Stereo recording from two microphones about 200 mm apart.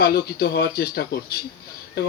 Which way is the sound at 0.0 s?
50° left (ahead or behind).